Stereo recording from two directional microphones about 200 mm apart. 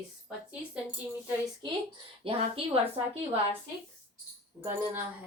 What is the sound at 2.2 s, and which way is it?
Speech, 25° right (ahead or behind).